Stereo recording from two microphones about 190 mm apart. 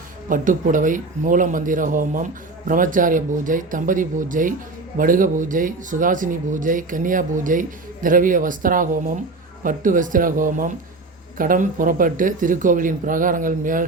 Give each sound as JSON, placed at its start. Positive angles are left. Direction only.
{"t": 0.3, "sound": "speech", "side_deg": -45}